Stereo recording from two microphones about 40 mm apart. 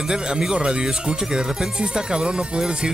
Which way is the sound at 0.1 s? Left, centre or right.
Centre.